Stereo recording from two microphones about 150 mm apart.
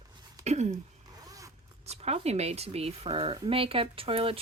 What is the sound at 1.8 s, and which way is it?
Speech, 45° right (ahead or behind).